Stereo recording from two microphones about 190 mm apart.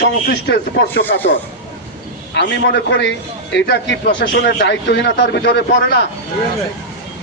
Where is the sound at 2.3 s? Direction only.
65° left (ahead or behind).